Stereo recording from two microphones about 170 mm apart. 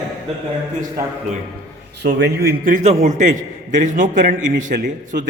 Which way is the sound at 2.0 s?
80° right.